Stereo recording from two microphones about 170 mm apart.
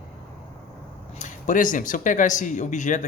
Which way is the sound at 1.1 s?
45° left (ahead or behind).